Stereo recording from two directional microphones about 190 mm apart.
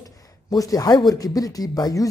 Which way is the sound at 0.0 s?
20° left (ahead or behind).